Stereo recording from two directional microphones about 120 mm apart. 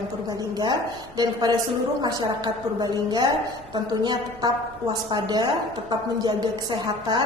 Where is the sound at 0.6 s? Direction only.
35° right (ahead or behind).